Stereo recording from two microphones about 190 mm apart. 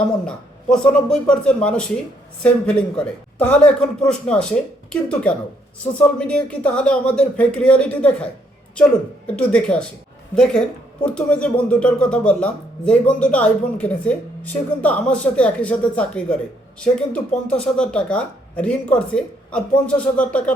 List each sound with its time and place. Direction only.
0.3 s speech: 5° left (ahead or behind)